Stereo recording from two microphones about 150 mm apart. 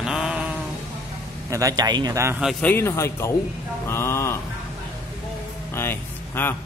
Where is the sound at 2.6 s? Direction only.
15° left (ahead or behind).